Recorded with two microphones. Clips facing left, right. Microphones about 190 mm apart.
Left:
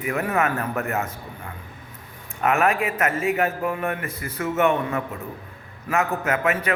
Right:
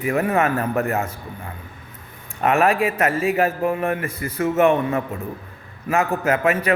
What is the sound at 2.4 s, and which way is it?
A man's voice, 30° right (ahead or behind).